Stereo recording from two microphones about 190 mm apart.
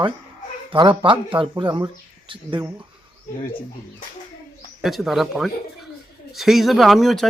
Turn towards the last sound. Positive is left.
turn(degrees=0)  # may be behind; listen again after turning